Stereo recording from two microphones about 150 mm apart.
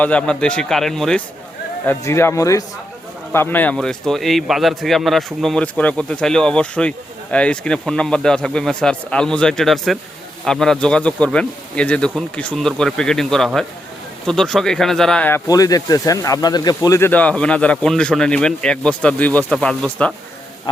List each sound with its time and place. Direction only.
0.0 s speech: 10° left (ahead or behind)
1.9 s speech: 15° left (ahead or behind)
15.4 s speech: 25° left (ahead or behind)
17.1 s speech: 10° left (ahead or behind)